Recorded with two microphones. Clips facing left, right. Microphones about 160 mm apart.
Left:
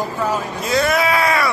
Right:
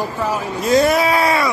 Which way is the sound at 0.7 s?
35° right (ahead or behind).